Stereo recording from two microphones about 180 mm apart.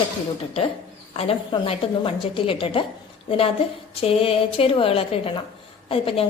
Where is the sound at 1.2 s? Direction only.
30° left (ahead or behind).